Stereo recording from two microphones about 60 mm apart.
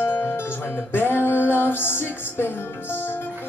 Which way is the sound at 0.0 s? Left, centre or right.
Left.